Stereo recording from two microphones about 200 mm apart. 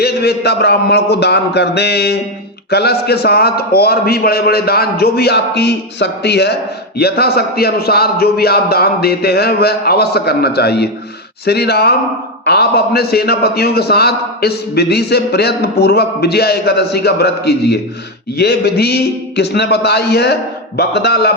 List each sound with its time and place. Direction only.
0.0 s a man's voice: 55° left (ahead or behind)